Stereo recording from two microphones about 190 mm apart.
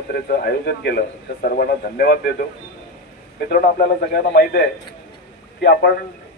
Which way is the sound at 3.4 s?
45° left (ahead or behind).